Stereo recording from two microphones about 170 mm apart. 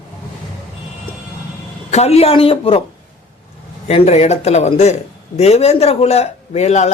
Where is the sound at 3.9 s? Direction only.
40° left (ahead or behind).